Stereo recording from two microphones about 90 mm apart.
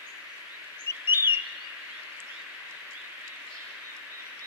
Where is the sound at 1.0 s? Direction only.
25° right (ahead or behind).